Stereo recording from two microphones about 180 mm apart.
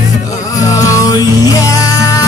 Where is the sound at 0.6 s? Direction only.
20° left (ahead or behind).